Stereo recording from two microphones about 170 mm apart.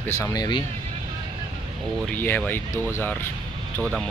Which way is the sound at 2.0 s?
10° left (ahead or behind).